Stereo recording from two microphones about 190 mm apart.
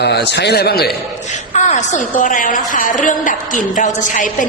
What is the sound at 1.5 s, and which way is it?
A woman's voice, 40° left (ahead or behind).